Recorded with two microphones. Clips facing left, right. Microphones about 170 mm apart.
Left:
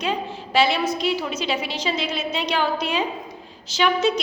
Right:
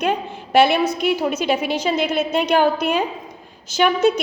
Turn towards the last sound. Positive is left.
turn(degrees=-50)  # may be behind; listen again after turning